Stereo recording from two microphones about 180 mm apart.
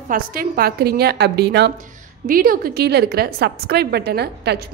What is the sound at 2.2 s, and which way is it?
A woman's voice, 50° right (ahead or behind).